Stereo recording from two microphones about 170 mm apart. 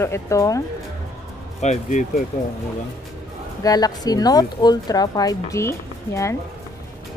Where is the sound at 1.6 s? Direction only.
45° left (ahead or behind).